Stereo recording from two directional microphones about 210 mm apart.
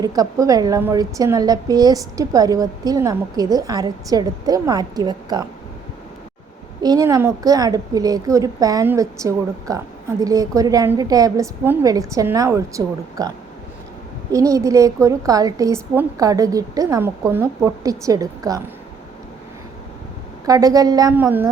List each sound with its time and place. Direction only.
0.0 s a woman's voice: 15° right (ahead or behind)
6.8 s a woman's voice: 15° right (ahead or behind)
14.3 s a woman's voice: 15° right (ahead or behind)
20.4 s a woman's voice: 15° right (ahead or behind)